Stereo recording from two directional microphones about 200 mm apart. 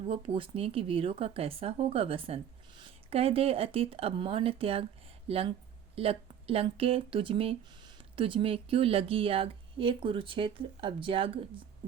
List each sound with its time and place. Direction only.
0.0 s speech: 30° right (ahead or behind)